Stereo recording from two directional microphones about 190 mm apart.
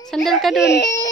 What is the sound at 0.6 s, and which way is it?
Speech, 60° left (ahead or behind).